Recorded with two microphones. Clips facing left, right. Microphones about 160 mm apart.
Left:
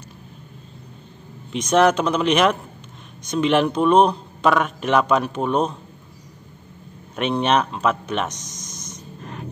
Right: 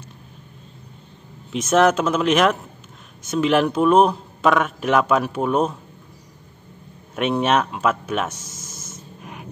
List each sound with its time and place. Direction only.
1.5 s speech: centre (ahead or behind)
7.2 s speech: 5° right (ahead or behind)